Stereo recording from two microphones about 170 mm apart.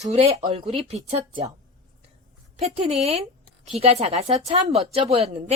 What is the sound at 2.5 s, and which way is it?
A woman's voice, 40° right (ahead or behind).